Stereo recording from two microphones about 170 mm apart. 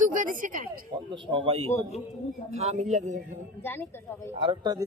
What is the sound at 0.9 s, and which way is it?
A woman's voice, 30° right (ahead or behind).